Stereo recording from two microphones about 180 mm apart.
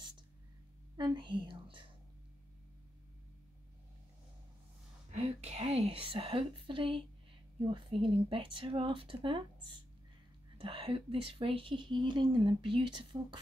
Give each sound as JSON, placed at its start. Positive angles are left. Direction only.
{"t": 0.9, "sound": "a woman's voice", "side_deg": -25}
{"t": 5.1, "sound": "speech", "side_deg": -35}
{"t": 10.6, "sound": "speech", "side_deg": -30}